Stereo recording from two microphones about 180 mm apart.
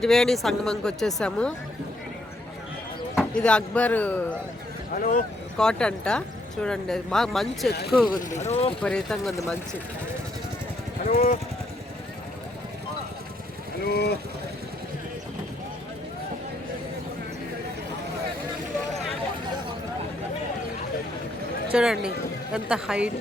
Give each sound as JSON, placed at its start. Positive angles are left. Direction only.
{"t": 0.0, "sound": "speech", "side_deg": 0}
{"t": 3.2, "sound": "speech", "side_deg": 5}
{"t": 4.9, "sound": "speech", "side_deg": 50}
{"t": 5.5, "sound": "speech", "side_deg": 5}
{"t": 7.7, "sound": "speech", "side_deg": 65}
{"t": 8.2, "sound": "speech", "side_deg": 40}
{"t": 8.8, "sound": "speech", "side_deg": 5}
{"t": 11.1, "sound": "speech", "side_deg": 50}
{"t": 13.8, "sound": "speech", "side_deg": 65}
{"t": 21.7, "sound": "speech", "side_deg": -5}